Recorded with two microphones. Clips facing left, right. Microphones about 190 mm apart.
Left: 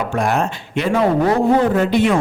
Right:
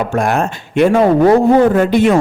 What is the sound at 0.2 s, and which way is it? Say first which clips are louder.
A man's voice: right 1 dB; 50° right (ahead or behind).